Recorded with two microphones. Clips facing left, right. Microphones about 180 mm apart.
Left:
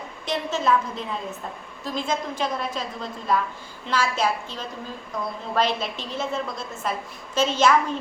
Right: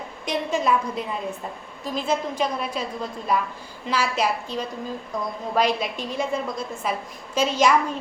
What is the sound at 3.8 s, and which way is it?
Speech, 10° right (ahead or behind).